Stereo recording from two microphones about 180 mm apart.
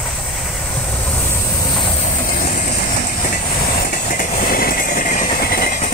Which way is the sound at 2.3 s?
50° left (ahead or behind).